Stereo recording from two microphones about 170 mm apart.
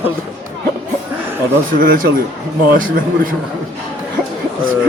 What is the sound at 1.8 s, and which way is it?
A man's voice, 55° right (ahead or behind).